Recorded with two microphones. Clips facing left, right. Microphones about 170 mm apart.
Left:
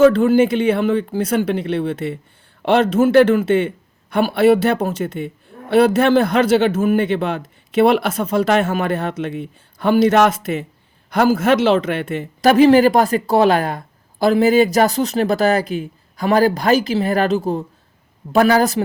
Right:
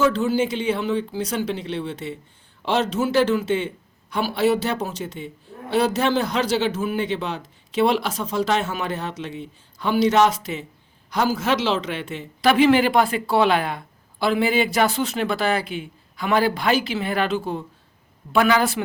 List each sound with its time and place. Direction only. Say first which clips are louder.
0.0 s a man's voice: left 8 dB; 55° left (ahead or behind)